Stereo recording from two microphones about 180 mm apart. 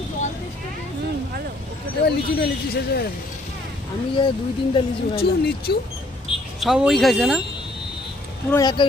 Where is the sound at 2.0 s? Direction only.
60° left (ahead or behind).